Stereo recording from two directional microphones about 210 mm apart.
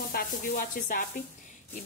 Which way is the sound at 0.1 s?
45° left (ahead or behind).